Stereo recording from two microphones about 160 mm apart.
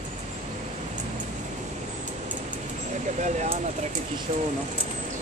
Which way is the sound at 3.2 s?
45° right (ahead or behind).